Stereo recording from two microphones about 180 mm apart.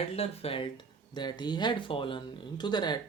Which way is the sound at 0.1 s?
35° left (ahead or behind).